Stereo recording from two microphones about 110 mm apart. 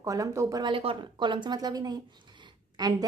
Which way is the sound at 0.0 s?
30° right (ahead or behind).